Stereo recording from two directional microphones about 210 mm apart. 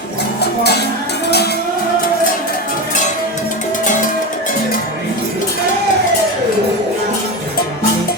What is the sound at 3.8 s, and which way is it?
Music, 35° left (ahead or behind).